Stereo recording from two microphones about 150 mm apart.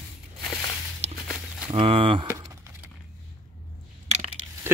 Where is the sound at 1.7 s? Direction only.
35° right (ahead or behind).